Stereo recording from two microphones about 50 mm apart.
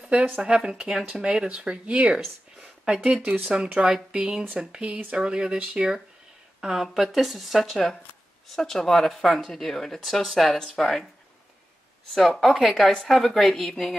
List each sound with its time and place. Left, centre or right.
0.4 s speech: centre
3.8 s speech: centre
6.6 s speech: centre
12.1 s a woman's voice: centre